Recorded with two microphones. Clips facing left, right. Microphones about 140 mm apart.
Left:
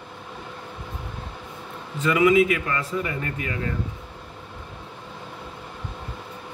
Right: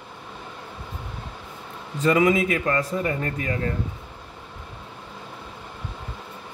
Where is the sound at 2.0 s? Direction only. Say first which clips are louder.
Left 1 dB; 40° right (ahead or behind).